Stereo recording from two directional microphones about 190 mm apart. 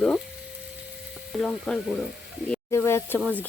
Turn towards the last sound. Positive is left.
turn(degrees=15)  # may be behind; listen again after turning